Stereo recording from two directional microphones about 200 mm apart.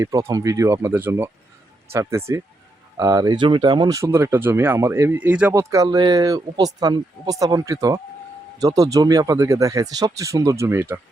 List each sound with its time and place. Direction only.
0.0 s speech: 15° right (ahead or behind)